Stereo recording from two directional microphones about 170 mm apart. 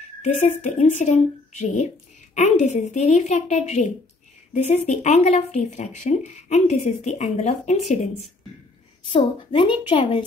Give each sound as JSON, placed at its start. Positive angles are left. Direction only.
{"t": 0.2, "sound": "speech", "side_deg": 45}
{"t": 9.1, "sound": "a woman's voice", "side_deg": 30}